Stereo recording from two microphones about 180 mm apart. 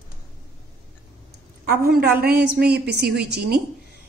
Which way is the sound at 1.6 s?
60° right (ahead or behind).